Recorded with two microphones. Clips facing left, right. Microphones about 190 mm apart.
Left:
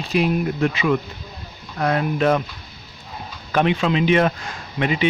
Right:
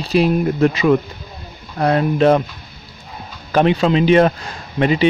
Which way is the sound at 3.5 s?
35° right (ahead or behind).